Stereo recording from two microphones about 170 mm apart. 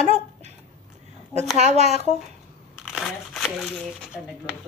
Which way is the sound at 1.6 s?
40° right (ahead or behind).